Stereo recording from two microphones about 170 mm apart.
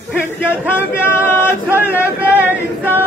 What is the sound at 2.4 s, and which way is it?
Choir, 10° right (ahead or behind).